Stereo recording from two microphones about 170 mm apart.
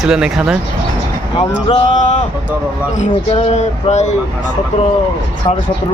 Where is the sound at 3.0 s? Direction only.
45° left (ahead or behind).